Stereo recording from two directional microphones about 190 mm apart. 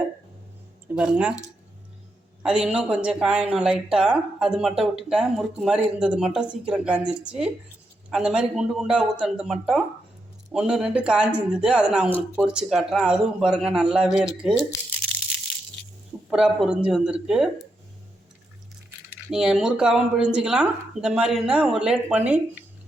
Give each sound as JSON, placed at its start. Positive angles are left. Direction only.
{"t": 0.9, "sound": "speech", "side_deg": -5}
{"t": 2.4, "sound": "speech", "side_deg": -5}
{"t": 16.3, "sound": "speech", "side_deg": -5}
{"t": 19.3, "sound": "speech", "side_deg": -5}